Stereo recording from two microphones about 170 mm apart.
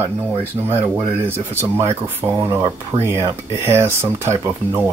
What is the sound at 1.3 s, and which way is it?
Speech, 15° right (ahead or behind).